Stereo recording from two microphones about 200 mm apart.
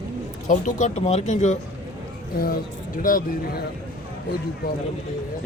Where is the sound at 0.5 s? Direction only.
35° left (ahead or behind).